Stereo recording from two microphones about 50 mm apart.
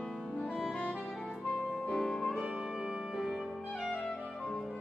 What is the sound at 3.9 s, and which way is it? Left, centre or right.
Music, left.